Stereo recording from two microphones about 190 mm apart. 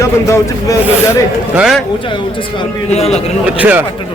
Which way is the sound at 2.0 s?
25° left (ahead or behind).